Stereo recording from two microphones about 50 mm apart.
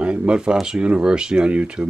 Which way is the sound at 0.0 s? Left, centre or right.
Right.